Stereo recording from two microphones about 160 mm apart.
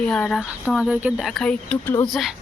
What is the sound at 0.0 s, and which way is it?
Speech, 5° left (ahead or behind).